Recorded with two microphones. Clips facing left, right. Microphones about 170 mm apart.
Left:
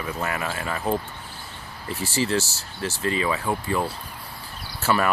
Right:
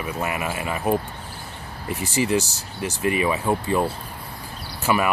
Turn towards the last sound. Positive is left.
turn(degrees=-10)  # may be behind; listen again after turning